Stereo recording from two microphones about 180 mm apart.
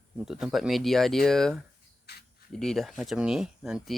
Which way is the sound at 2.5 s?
Centre (ahead or behind).